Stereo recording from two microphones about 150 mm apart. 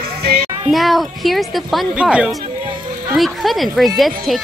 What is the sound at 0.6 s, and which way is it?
A child's voice, centre (ahead or behind).